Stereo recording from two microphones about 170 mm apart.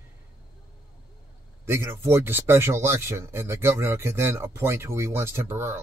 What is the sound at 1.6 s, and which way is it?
Speech, 15° right (ahead or behind).